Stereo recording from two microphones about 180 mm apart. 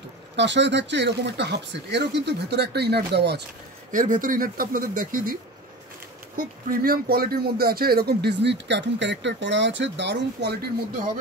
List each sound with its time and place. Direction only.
0.4 s speech: 75° right (ahead or behind)
3.9 s speech: 45° right (ahead or behind)
6.3 s speech: 55° right (ahead or behind); by 10.7 s 70° right (ahead or behind)